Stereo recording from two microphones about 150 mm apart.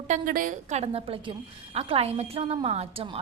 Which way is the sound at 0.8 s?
40° right (ahead or behind).